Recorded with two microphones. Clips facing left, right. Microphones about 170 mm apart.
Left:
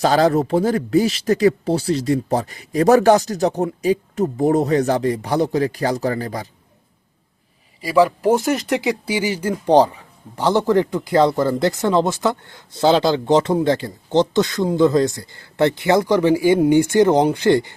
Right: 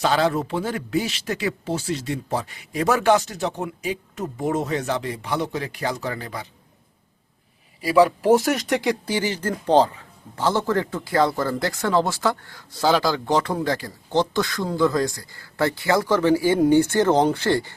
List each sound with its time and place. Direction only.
0.0 s speech: 40° left (ahead or behind)
7.9 s speech: centre (ahead or behind); by 17.7 s 20° left (ahead or behind)